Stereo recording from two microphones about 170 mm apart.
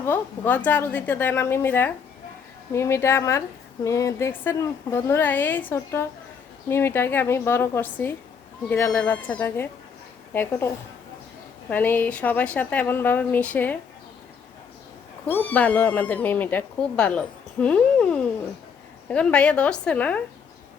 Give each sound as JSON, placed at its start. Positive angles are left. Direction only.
{"t": 0.0, "sound": "speech", "side_deg": 10}
{"t": 11.7, "sound": "speech", "side_deg": 10}
{"t": 15.3, "sound": "speech", "side_deg": 10}